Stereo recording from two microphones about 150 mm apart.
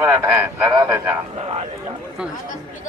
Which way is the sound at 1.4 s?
45° right (ahead or behind).